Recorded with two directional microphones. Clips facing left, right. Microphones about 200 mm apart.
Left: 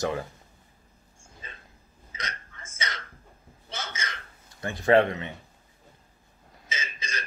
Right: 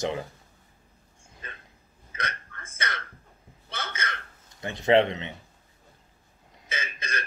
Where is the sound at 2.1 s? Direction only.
60° right (ahead or behind).